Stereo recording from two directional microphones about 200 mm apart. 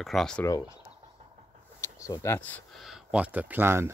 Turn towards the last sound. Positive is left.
turn(degrees=-10)  # may be behind; listen again after turning